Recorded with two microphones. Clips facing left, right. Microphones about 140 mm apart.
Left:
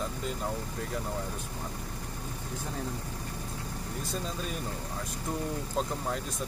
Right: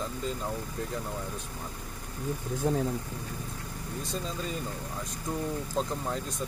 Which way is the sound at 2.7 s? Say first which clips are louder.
Right 12 dB; 50° right (ahead or behind).